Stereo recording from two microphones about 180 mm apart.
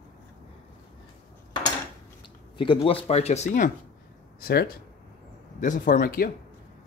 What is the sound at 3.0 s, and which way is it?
Speech, 35° left (ahead or behind).